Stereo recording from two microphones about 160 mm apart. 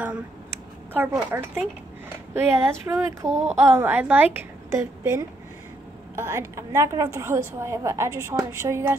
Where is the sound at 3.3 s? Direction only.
45° right (ahead or behind).